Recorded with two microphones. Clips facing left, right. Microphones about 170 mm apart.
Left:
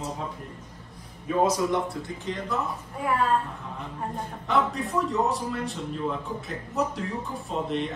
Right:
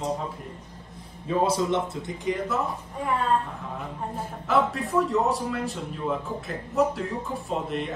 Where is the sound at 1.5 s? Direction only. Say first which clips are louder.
Right 1 dB; 25° right (ahead or behind).